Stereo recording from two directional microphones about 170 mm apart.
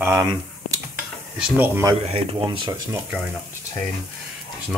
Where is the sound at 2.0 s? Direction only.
35° right (ahead or behind).